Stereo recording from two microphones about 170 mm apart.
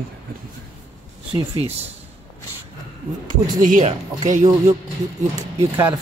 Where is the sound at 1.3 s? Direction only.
35° right (ahead or behind).